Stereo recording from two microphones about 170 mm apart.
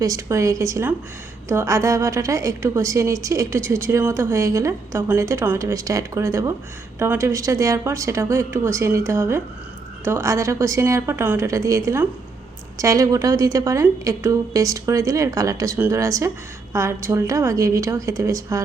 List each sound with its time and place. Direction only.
0.0 s a woman's voice: 20° right (ahead or behind)